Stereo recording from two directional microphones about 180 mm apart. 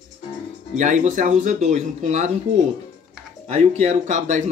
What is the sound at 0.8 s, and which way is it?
Speech, 45° right (ahead or behind).